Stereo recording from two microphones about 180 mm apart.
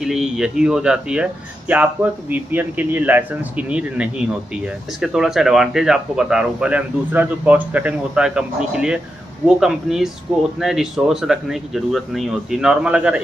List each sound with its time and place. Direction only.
0.0 s speech: 5° right (ahead or behind)